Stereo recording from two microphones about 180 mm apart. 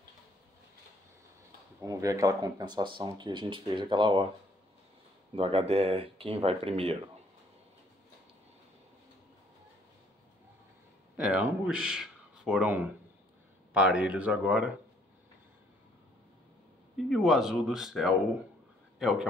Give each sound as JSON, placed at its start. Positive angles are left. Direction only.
{"t": 1.8, "sound": "speech", "side_deg": -20}
{"t": 5.3, "sound": "speech", "side_deg": -30}
{"t": 11.1, "sound": "speech", "side_deg": -10}
{"t": 16.9, "sound": "speech", "side_deg": 0}